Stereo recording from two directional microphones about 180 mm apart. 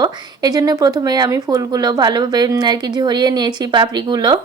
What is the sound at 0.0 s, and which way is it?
Speech, 20° right (ahead or behind).